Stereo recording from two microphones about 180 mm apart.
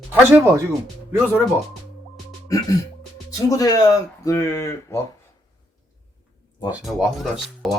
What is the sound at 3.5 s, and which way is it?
Speech, 20° left (ahead or behind).